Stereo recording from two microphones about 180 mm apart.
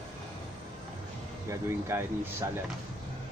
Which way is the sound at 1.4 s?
15° right (ahead or behind).